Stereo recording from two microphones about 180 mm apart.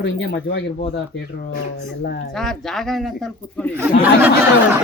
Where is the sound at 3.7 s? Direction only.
10° right (ahead or behind).